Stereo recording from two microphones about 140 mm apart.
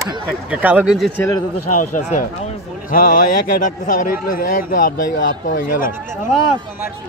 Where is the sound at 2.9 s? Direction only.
80° left.